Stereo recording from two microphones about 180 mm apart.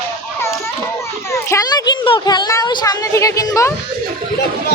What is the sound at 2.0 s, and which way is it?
Speech, 25° left (ahead or behind).